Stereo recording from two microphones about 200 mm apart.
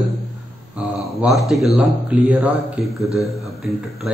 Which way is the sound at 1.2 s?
Centre (ahead or behind).